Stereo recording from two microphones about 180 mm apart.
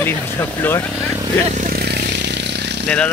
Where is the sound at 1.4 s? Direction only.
45° right (ahead or behind); by 2.8 s 70° right (ahead or behind).